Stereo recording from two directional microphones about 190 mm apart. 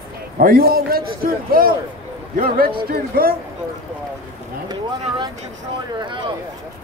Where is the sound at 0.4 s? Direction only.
50° right (ahead or behind).